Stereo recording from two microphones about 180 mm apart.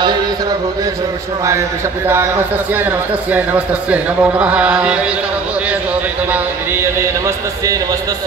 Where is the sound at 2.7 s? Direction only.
10° right (ahead or behind).